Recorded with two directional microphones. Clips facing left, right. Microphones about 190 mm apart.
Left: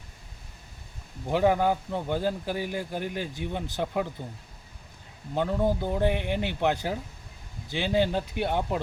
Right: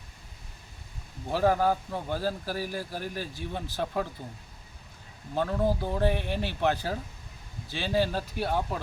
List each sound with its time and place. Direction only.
1.3 s a man's voice: 20° left (ahead or behind)
5.3 s a man's voice: 20° left (ahead or behind)